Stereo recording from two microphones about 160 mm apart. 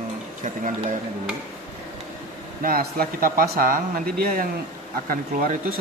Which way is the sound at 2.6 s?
65° right (ahead or behind).